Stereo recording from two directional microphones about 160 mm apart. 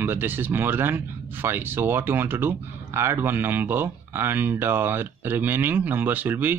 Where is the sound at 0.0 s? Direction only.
15° right (ahead or behind).